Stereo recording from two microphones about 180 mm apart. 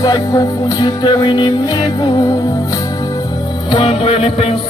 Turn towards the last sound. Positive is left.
turn(degrees=30)  # may be behind; listen again after turning